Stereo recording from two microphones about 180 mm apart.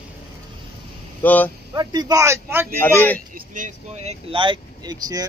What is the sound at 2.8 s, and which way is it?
Speech, 10° left (ahead or behind).